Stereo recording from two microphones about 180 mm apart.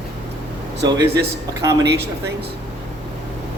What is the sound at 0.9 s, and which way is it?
Speech, 65° right (ahead or behind).